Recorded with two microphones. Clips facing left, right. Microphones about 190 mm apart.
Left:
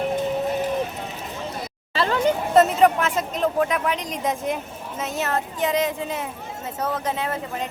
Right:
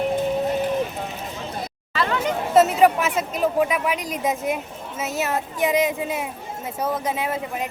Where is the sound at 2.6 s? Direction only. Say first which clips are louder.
Right 1 dB; 5° right (ahead or behind).